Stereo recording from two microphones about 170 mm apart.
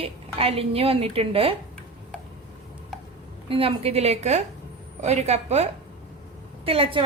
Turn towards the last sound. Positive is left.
turn(degrees=-35)  # may be behind; listen again after turning